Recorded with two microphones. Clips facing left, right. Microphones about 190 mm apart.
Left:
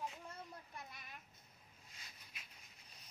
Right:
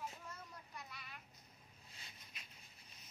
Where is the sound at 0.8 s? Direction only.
50° left (ahead or behind).